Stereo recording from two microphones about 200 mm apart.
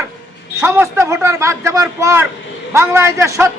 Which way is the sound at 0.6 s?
15° right (ahead or behind).